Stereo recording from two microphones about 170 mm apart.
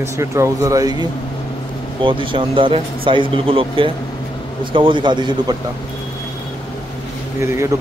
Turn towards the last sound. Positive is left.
turn(degrees=-15)  # may be behind; listen again after turning